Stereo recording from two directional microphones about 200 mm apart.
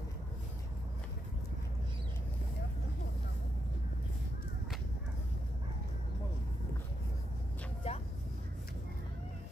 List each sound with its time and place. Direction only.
7.8 s vehicle: 30° left (ahead or behind)